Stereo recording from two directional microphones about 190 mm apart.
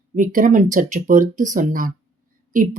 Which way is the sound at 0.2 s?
45° right (ahead or behind).